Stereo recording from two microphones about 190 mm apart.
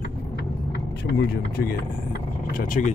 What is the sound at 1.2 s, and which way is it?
Speech, 55° left (ahead or behind).